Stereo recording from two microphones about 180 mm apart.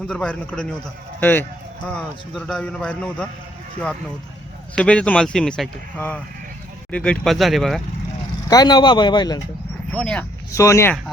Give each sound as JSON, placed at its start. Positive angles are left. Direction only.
{"t": 0.1, "sound": "speech", "side_deg": 5}
{"t": 4.7, "sound": "speech", "side_deg": 5}
{"t": 8.4, "sound": "speech", "side_deg": 20}
{"t": 9.9, "sound": "speech", "side_deg": 5}
{"t": 10.5, "sound": "speech", "side_deg": 15}